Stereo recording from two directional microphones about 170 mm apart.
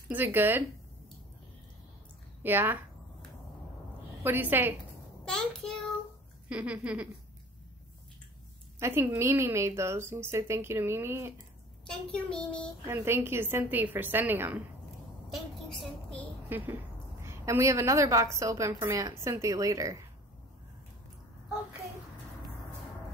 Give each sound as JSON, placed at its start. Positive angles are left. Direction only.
{"t": 0.1, "sound": "a woman's voice", "side_deg": -10}
{"t": 2.4, "sound": "a woman's voice", "side_deg": -10}
{"t": 4.2, "sound": "a woman's voice", "side_deg": -10}
{"t": 5.2, "sound": "child singing", "side_deg": 5}
{"t": 6.5, "sound": "a woman's voice", "side_deg": -5}
{"t": 8.7, "sound": "a woman's voice", "side_deg": -15}
{"t": 11.8, "sound": "a child's voice", "side_deg": 5}
{"t": 12.8, "sound": "a woman's voice", "side_deg": -15}
{"t": 15.8, "sound": "child singing", "side_deg": 5}
{"t": 16.4, "sound": "a woman's voice", "side_deg": -10}